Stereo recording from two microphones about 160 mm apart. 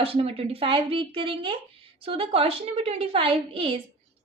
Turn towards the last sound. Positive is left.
turn(degrees=-35)  # may be behind; listen again after turning